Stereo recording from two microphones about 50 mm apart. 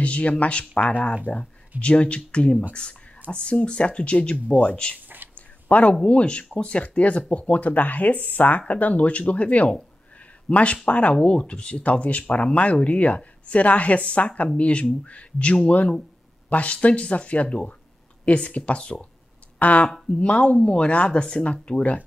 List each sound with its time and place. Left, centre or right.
0.0 s speech: left
5.3 s a sound: left
6.0 s speech: left